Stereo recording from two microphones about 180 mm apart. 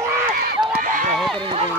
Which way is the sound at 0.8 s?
45° right (ahead or behind).